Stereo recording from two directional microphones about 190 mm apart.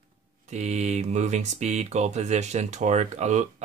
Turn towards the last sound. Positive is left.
turn(degrees=-35)  # may be behind; listen again after turning